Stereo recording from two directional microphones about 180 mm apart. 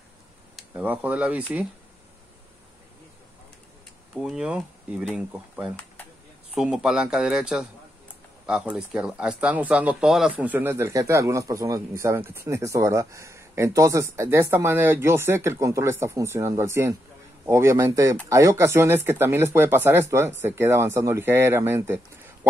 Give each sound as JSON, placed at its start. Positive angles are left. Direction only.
{"t": 0.6, "sound": "speech", "side_deg": -10}
{"t": 4.1, "sound": "speech", "side_deg": -5}